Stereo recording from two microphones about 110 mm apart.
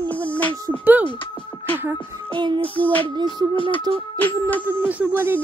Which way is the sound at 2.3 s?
45° right (ahead or behind).